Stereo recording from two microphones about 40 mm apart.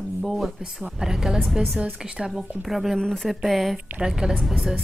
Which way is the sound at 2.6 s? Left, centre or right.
Centre.